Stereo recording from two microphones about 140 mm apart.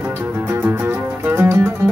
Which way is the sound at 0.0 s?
15° right (ahead or behind).